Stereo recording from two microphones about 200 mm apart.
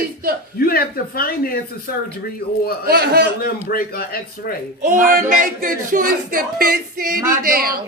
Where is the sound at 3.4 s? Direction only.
50° left (ahead or behind).